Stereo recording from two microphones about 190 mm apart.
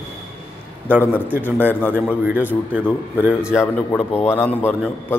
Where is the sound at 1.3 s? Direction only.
10° right (ahead or behind).